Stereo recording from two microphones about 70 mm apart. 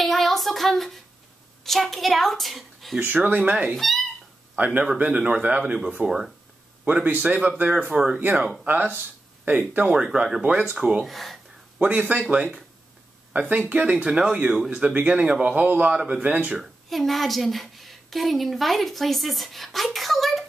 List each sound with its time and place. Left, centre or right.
0.0 s a sound: centre
1.6 s a woman's voice: centre
3.0 s speech: right
3.7 s a woman's voice: centre
4.6 s speech: right; by 6.3 s centre
6.8 s speech: centre
7.9 s speech: centre
8.6 s speech: right
11.1 s a woman's voice: centre
12.1 s a woman's voice: right
16.6 s a woman's voice: centre